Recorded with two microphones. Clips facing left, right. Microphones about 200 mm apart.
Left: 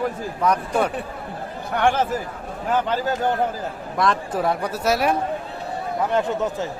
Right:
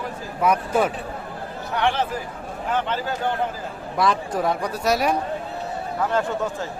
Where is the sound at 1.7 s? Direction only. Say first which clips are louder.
Left 3 dB; 50° left (ahead or behind).